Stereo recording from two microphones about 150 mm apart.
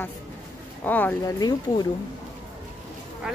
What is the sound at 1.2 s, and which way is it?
Speech, 25° left (ahead or behind).